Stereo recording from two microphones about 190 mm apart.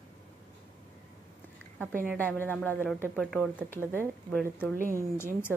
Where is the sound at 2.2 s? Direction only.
10° left (ahead or behind).